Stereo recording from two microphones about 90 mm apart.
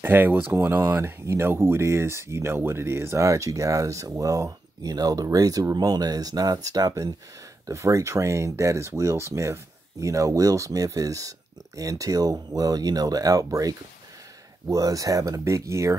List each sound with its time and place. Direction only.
0.0 s speech: 20° right (ahead or behind)